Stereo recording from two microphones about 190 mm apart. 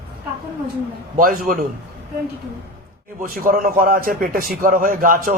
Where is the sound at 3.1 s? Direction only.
45° right (ahead or behind).